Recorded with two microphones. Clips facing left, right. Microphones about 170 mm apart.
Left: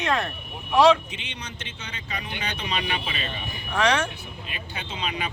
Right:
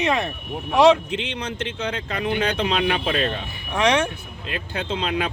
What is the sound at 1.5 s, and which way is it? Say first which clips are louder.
Speech: right 12 dB; 60° right (ahead or behind).